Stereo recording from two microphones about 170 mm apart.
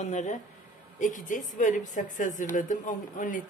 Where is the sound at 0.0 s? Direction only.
45° left (ahead or behind).